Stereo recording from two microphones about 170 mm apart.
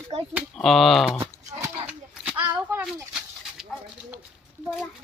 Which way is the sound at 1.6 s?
15° right (ahead or behind).